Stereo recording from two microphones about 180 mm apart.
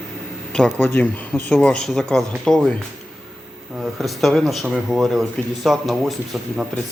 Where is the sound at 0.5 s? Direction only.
10° left (ahead or behind).